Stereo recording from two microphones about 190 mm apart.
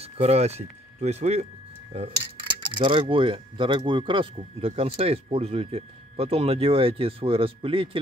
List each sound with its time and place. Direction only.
0.0 s speech: 35° right (ahead or behind)